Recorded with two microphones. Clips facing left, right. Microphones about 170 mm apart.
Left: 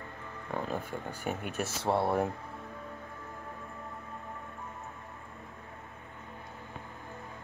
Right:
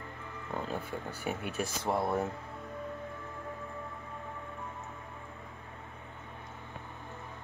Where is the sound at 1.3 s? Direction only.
5° right (ahead or behind).